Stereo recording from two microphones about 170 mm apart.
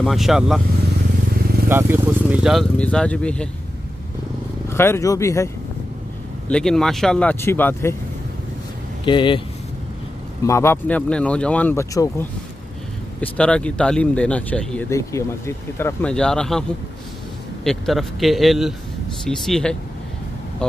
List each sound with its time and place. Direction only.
0.0 s a man's voice: centre (ahead or behind)
1.7 s speech: 10° right (ahead or behind)
2.8 s speech: 5° left (ahead or behind)
4.6 s speech: 15° left (ahead or behind)
6.5 s speech: 5° left (ahead or behind)
9.0 s speech: 30° left (ahead or behind)
10.4 s speech: 15° left (ahead or behind)
13.2 s speech: 5° left (ahead or behind)
14.9 s speech: 15° left (ahead or behind)
17.6 s a man's voice: centre (ahead or behind)